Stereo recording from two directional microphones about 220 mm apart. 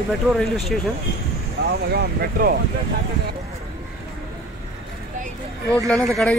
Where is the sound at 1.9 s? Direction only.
45° right (ahead or behind).